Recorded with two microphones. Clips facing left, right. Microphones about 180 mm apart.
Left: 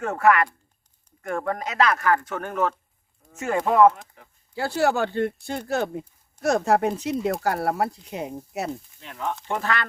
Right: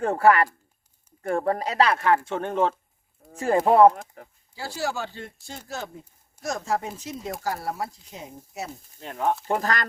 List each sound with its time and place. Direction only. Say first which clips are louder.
0.0 s speech: right 1 dB; 30° right (ahead or behind)
4.5 s speech: left 8 dB; 60° left (ahead or behind)
9.0 s speech: right 9 dB; 45° right (ahead or behind)